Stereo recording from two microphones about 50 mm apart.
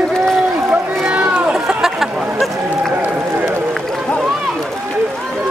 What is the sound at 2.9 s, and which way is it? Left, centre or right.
Run, right.